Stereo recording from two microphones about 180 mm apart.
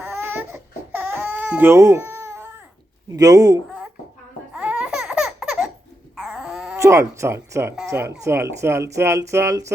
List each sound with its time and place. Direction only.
0.0 s baby cry: 10° right (ahead or behind)
3.1 s a man's voice: 20° right (ahead or behind)
4.5 s laughter: 5° right (ahead or behind)
6.1 s dog: 5° right (ahead or behind)
6.7 s speech: 15° right (ahead or behind)